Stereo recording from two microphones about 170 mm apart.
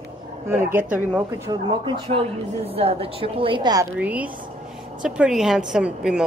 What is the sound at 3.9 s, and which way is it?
A woman's voice, 10° right (ahead or behind).